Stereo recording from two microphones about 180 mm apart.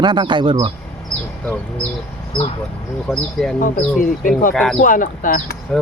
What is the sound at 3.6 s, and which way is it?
Speech, 45° left (ahead or behind).